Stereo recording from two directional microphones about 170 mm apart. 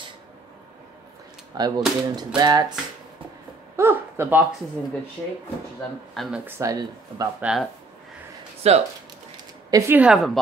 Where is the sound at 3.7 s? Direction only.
15° right (ahead or behind).